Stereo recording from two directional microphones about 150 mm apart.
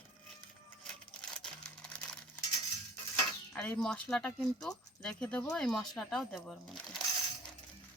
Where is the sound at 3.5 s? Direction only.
5° left (ahead or behind).